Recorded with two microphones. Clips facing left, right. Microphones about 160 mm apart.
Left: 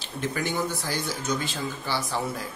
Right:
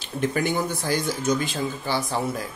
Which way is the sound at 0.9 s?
45° right (ahead or behind).